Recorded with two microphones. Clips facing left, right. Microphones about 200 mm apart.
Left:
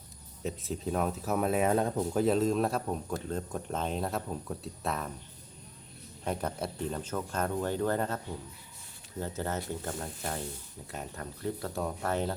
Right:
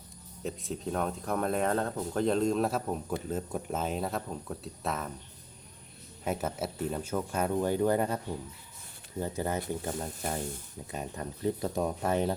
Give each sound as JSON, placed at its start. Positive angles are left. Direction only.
{"t": 0.4, "sound": "speech", "side_deg": 0}
{"t": 6.2, "sound": "speech", "side_deg": -5}